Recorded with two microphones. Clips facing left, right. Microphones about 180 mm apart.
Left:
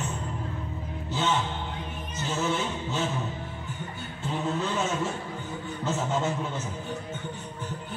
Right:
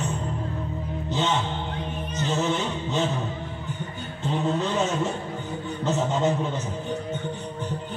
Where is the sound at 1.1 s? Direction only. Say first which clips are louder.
Right 2 dB; 10° left (ahead or behind).